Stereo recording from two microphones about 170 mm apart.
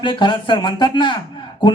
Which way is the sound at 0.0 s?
30° left (ahead or behind).